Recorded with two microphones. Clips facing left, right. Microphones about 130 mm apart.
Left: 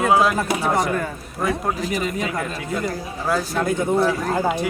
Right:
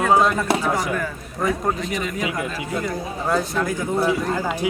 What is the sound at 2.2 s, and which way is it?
Speech, 5° right (ahead or behind).